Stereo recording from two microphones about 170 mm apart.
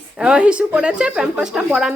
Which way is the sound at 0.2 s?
5° right (ahead or behind).